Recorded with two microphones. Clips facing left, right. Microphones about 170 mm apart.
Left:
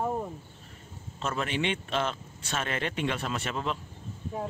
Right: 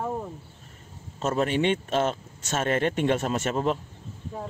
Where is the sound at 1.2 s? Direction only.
40° right (ahead or behind).